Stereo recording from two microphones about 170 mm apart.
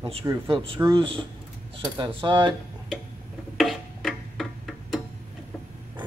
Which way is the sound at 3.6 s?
Centre (ahead or behind).